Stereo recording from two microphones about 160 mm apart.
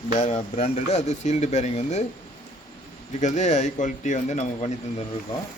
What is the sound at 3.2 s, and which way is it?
Speech, 50° left (ahead or behind).